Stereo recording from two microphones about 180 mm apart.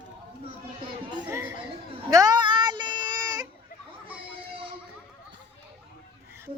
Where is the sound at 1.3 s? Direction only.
15° right (ahead or behind).